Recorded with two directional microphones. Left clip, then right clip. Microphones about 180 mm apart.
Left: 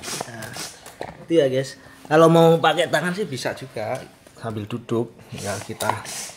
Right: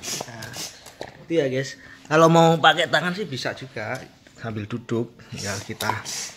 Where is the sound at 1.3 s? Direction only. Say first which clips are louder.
Left 4 dB; 5° left (ahead or behind).